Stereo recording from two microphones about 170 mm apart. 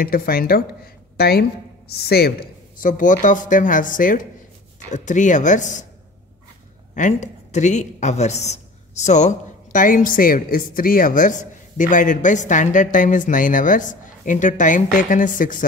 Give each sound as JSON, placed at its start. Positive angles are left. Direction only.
{"t": 0.0, "sound": "a woman's voice", "side_deg": 60}
{"t": 7.0, "sound": "a woman's voice", "side_deg": 45}